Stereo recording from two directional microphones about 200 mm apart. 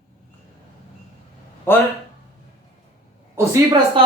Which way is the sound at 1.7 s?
10° left (ahead or behind).